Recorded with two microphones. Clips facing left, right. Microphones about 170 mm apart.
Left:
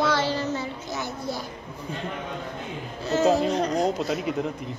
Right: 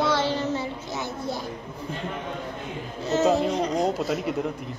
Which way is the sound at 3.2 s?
10° left (ahead or behind).